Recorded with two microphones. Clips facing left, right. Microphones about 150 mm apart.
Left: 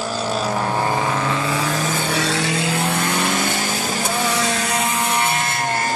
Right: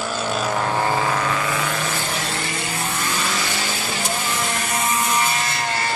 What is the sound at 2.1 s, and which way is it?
Vehicle, 80° left.